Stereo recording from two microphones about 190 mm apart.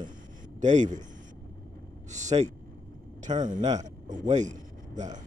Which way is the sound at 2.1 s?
40° right (ahead or behind).